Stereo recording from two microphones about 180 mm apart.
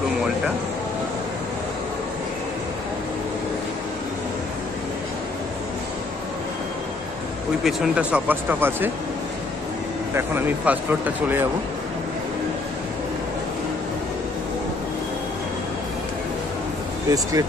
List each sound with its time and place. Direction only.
7.6 s speech: 5° right (ahead or behind)
10.1 s speech: 10° right (ahead or behind)
17.1 s speech: 20° right (ahead or behind)